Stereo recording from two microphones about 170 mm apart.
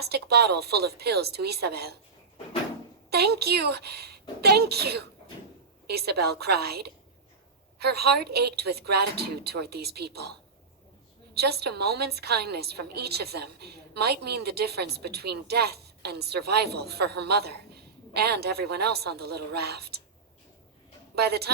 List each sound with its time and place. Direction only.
0.0 s a woman's voice: 70° right (ahead or behind)
3.1 s a woman's voice: 70° right (ahead or behind)
11.3 s a woman's voice: 70° right (ahead or behind)
21.2 s a woman's voice: 70° right (ahead or behind)